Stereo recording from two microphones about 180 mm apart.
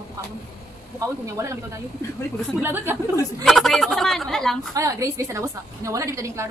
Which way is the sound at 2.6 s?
10° right (ahead or behind).